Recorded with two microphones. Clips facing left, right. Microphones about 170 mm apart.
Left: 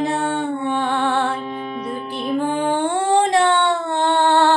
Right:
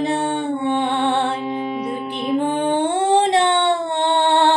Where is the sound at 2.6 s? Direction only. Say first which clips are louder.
Right 1 dB; 20° right (ahead or behind).